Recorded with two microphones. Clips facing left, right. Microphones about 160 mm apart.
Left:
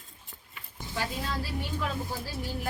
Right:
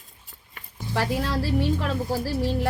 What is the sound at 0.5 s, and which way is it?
Speech, 80° right.